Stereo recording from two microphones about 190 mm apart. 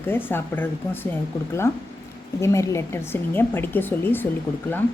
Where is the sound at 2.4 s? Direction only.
15° left (ahead or behind).